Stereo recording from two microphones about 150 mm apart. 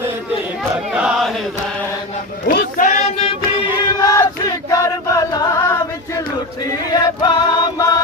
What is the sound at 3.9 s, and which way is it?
Chant, 25° left (ahead or behind).